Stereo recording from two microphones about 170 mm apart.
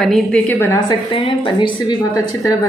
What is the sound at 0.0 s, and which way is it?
Speech, centre (ahead or behind).